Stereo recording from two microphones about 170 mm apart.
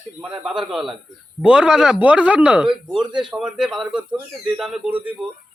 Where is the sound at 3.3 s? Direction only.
5° right (ahead or behind).